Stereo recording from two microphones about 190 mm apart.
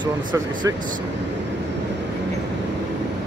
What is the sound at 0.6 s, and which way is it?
Speech, 15° right (ahead or behind).